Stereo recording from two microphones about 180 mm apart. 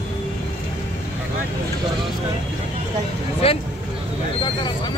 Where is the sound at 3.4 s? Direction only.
30° left (ahead or behind).